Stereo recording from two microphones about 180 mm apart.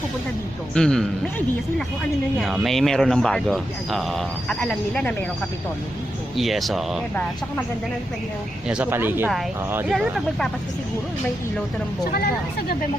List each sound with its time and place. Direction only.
0.7 s speech: 5° left (ahead or behind)
6.3 s speech: centre (ahead or behind)
8.6 s speech: 5° right (ahead or behind)
9.9 s speech: centre (ahead or behind)
12.1 s speech: 60° left (ahead or behind)